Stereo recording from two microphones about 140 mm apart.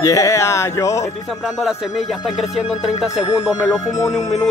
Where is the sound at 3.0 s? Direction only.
5° right (ahead or behind).